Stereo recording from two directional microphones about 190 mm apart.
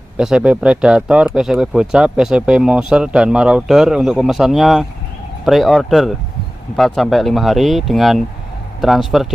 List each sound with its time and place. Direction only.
0.2 s speech: 5° right (ahead or behind)